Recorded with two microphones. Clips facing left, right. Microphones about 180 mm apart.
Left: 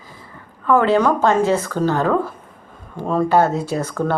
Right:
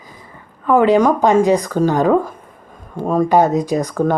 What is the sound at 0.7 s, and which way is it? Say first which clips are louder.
Speech: right 3 dB; 15° right (ahead or behind).